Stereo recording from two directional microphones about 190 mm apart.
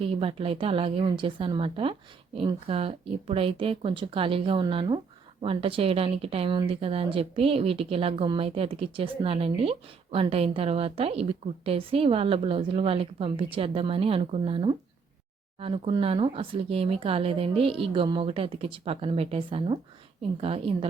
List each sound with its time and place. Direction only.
0.0 s a woman's voice: 30° right (ahead or behind)